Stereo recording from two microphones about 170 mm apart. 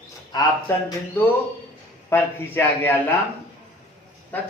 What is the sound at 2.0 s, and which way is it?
Speech, 15° left (ahead or behind).